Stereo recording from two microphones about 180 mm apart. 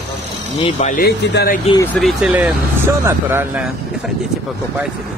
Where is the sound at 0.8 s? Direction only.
50° left (ahead or behind).